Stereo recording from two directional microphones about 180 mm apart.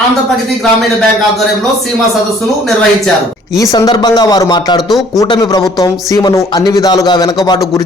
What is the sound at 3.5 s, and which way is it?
Speech, 20° left (ahead or behind).